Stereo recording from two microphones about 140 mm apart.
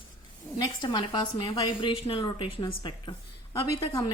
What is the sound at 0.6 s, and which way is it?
A woman's voice, 30° left (ahead or behind).